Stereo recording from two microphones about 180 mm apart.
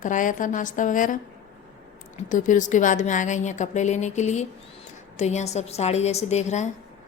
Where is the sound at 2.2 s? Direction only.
45° left (ahead or behind).